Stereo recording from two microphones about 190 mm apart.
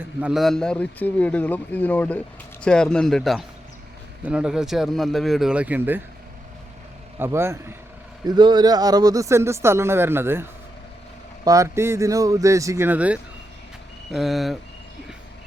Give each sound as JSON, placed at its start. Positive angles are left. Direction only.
{"t": 0.0, "sound": "a man's voice", "side_deg": -5}
{"t": 7.2, "sound": "a man's voice", "side_deg": -15}